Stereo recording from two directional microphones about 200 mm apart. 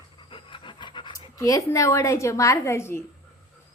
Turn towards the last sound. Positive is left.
turn(degrees=10)  # may be behind; listen again after turning